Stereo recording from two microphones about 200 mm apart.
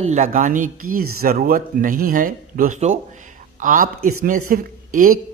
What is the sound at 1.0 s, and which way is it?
Speech, 90° right.